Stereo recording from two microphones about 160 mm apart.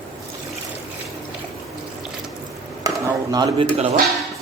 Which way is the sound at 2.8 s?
25° right (ahead or behind).